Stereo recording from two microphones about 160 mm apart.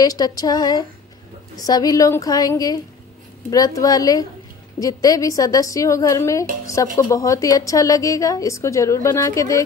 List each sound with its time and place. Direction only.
0.0 s a woman's voice: 25° left (ahead or behind)